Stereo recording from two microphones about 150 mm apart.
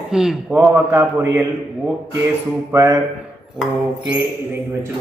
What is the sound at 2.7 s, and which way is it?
Speech, 20° right (ahead or behind).